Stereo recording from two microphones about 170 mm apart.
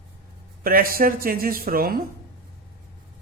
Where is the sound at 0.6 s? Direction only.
60° right (ahead or behind).